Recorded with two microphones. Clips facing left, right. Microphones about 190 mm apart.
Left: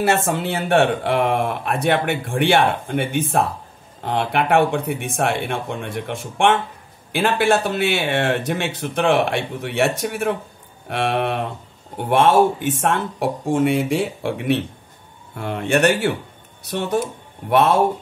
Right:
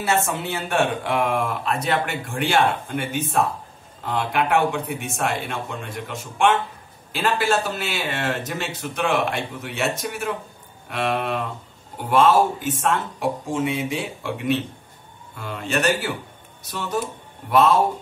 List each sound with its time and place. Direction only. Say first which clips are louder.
0.0 s speech: left 4 dB; 60° left (ahead or behind)